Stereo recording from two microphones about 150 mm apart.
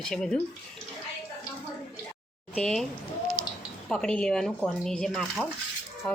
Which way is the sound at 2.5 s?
5° left (ahead or behind).